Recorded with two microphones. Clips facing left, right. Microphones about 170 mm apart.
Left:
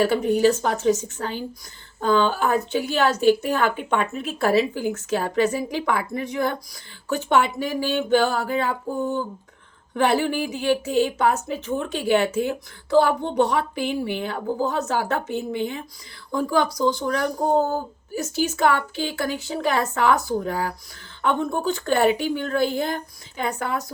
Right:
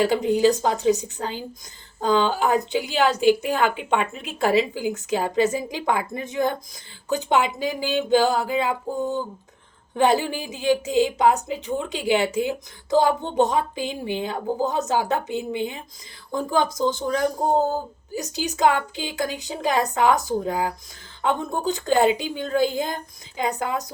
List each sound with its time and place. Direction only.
0.0 s a woman's voice: 15° right (ahead or behind)